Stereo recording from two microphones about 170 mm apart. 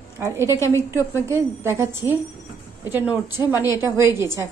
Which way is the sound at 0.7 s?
15° right (ahead or behind).